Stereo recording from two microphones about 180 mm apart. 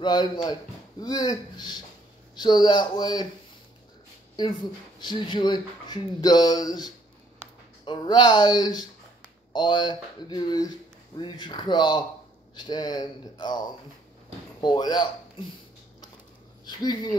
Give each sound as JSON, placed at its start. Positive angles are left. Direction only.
{"t": 0.0, "sound": "speech", "side_deg": 25}
{"t": 5.0, "sound": "speech", "side_deg": 25}
{"t": 16.6, "sound": "speech", "side_deg": 25}